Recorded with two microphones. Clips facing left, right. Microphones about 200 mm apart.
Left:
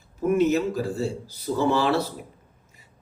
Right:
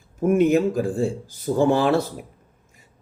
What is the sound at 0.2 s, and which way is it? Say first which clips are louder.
A man's voice: right 3 dB; 50° right (ahead or behind).